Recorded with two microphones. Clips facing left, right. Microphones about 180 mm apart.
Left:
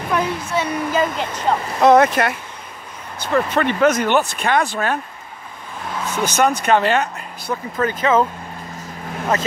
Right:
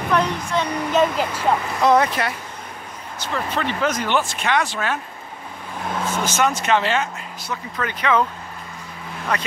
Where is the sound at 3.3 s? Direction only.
55° left (ahead or behind); by 5.0 s 40° left (ahead or behind).